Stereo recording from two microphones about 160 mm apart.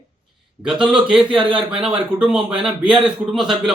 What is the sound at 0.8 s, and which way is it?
Speech, 5° right (ahead or behind).